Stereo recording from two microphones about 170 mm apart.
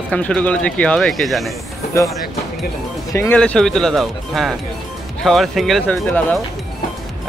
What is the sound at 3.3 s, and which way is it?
Speech, 5° left (ahead or behind).